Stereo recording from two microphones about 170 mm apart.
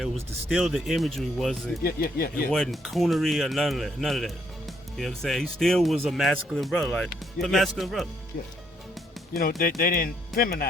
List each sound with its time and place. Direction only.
0.0 s speech: centre (ahead or behind)
1.8 s speech: 60° left (ahead or behind)
2.5 s speech: centre (ahead or behind)
9.3 s speech: 55° left (ahead or behind)